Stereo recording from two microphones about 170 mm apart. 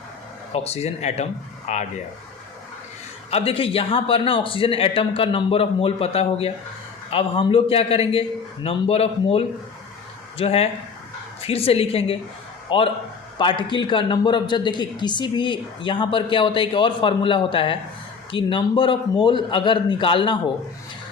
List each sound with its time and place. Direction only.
0.5 s a man's voice: 40° left (ahead or behind)
3.2 s a man's voice: 35° left (ahead or behind)